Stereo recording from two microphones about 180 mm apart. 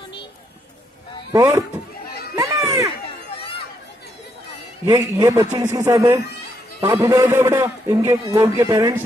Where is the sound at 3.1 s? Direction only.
30° left (ahead or behind).